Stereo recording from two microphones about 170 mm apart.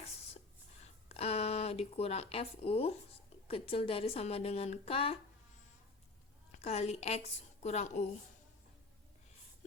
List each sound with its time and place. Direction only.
1.0 s a sound: 35° left (ahead or behind)
3.5 s a woman's voice: 35° left (ahead or behind)
6.6 s a woman's voice: 40° left (ahead or behind)